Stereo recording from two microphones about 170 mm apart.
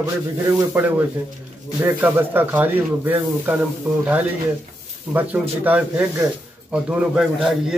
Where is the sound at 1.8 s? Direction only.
15° right (ahead or behind).